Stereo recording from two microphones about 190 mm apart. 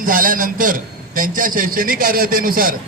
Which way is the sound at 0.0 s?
45° right (ahead or behind).